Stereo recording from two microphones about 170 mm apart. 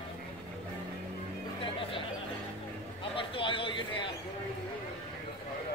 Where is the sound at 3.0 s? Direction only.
30° left (ahead or behind).